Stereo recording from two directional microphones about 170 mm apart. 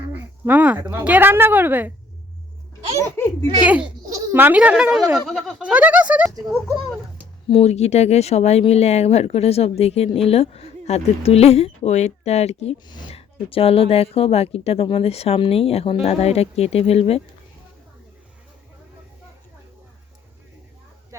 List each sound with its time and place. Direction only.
0.1 s a woman's voice: 10° right (ahead or behind)
3.2 s a child's voice: 15° left (ahead or behind)
3.9 s speech: 20° right (ahead or behind)
7.5 s speech: 40° left (ahead or behind)
12.9 s speech: 30° left (ahead or behind)
21.1 s a sound: 15° right (ahead or behind)